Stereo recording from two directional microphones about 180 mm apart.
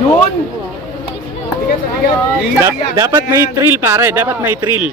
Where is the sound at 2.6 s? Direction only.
20° right (ahead or behind).